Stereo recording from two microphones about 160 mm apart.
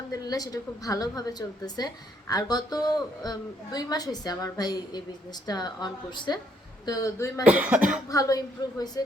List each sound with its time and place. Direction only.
0.1 s a woman's voice: 25° left (ahead or behind)
7.4 s cough: 10° right (ahead or behind)
8.1 s a woman's voice: 20° left (ahead or behind)